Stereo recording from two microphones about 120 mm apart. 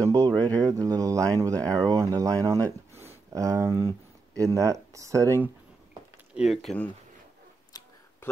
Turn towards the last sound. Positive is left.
turn(degrees=35)  # may be behind; listen again after turning